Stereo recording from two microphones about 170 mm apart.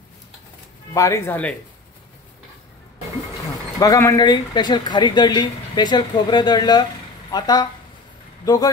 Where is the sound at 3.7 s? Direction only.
20° left (ahead or behind).